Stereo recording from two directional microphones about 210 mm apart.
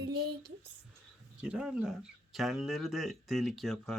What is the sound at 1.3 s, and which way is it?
Speech, 5° right (ahead or behind).